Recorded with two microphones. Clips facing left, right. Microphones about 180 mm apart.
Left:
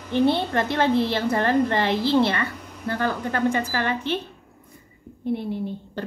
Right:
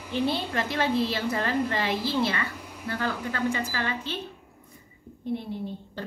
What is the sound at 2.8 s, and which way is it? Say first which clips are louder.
A woman's voice: left 5 dB; 55° left (ahead or behind).